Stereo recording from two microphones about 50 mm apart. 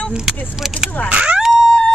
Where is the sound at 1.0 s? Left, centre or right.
Right.